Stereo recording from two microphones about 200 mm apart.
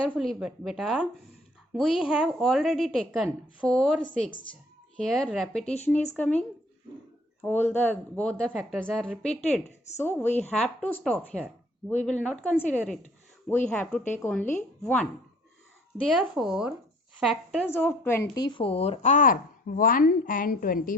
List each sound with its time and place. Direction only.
0.1 s a woman's voice: centre (ahead or behind)
5.0 s a woman's voice: centre (ahead or behind)
7.4 s a woman's voice: 10° left (ahead or behind)
16.1 s a woman's voice: 5° right (ahead or behind)
18.4 s a woman's voice: 25° left (ahead or behind); by 20.9 s 45° left (ahead or behind)